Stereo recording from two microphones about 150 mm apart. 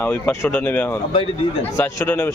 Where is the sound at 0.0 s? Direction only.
15° left (ahead or behind).